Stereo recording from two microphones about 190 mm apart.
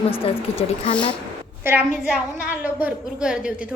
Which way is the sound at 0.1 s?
30° left (ahead or behind).